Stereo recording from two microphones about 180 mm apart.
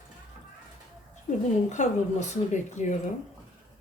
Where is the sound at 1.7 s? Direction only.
40° left (ahead or behind).